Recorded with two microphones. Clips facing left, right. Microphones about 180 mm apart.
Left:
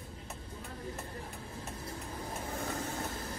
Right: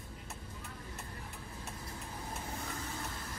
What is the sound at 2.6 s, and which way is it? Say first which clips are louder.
Vehicle: left 5 dB; 50° left (ahead or behind).